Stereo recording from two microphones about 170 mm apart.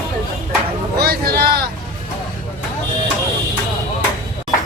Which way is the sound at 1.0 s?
65° right (ahead or behind).